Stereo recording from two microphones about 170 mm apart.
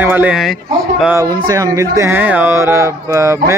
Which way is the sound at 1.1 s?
20° right (ahead or behind).